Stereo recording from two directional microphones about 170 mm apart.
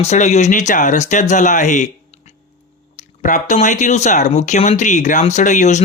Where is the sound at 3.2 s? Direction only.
50° left (ahead or behind).